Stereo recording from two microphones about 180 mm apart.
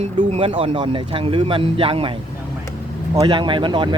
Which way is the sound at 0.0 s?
30° right (ahead or behind).